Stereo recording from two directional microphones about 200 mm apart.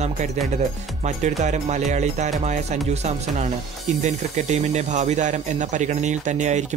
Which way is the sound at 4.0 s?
35° right (ahead or behind).